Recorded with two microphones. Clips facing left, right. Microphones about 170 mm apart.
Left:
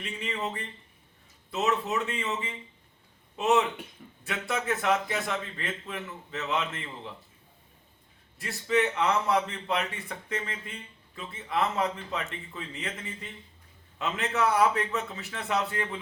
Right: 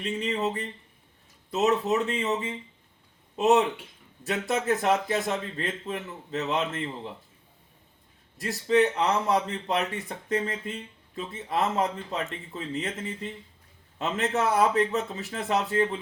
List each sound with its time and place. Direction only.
0.0 s a man's voice: 35° right (ahead or behind)
8.4 s a man's voice: 35° right (ahead or behind)
14.0 s a man's voice: 40° right (ahead or behind)